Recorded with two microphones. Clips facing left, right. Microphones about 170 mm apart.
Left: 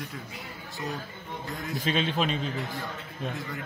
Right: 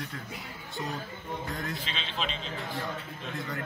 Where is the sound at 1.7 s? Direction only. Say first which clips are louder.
Left 9 dB; 50° left (ahead or behind).